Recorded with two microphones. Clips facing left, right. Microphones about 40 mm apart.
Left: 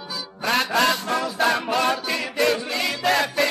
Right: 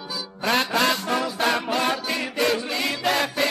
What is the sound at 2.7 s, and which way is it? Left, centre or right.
Music, centre.